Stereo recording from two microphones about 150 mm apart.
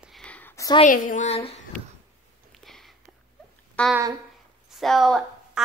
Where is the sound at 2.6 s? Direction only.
Centre (ahead or behind).